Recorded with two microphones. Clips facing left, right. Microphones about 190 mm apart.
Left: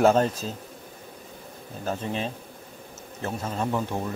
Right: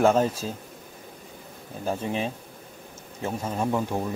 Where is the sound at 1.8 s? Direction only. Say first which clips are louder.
Right 2 dB; 10° right (ahead or behind).